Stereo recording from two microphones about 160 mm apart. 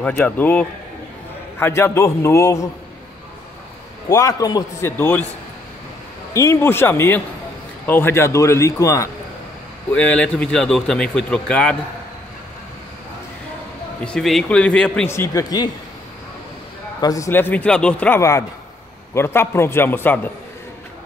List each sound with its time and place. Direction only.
0.0 s a man's voice: 10° left (ahead or behind)
4.1 s a man's voice: 20° left (ahead or behind)
4.9 s a man's voice: 10° left (ahead or behind)
6.3 s a man's voice: 20° left (ahead or behind)
14.0 s speech: 5° left (ahead or behind)
15.0 s a man's voice: 15° left (ahead or behind)
17.0 s a man's voice: 20° left (ahead or behind)